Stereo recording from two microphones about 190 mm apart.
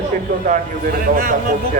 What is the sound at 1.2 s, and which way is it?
Speech, 50° right (ahead or behind).